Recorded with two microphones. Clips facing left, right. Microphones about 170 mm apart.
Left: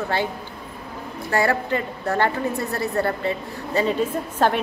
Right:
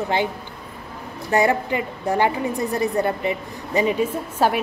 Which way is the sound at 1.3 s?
20° right (ahead or behind).